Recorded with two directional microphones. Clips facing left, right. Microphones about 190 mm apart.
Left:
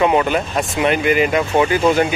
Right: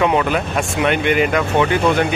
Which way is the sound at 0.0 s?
Centre (ahead or behind).